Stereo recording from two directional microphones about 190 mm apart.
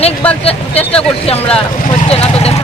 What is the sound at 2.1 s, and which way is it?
Speech, 30° left (ahead or behind).